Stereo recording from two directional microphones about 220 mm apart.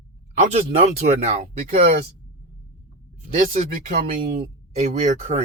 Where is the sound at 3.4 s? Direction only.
40° right (ahead or behind).